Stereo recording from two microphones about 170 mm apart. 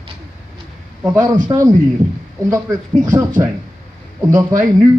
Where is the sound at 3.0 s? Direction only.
20° right (ahead or behind).